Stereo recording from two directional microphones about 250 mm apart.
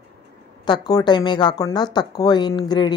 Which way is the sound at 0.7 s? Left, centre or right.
Centre.